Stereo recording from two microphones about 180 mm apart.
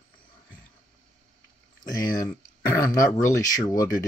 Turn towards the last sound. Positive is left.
turn(degrees=20)  # may be behind; listen again after turning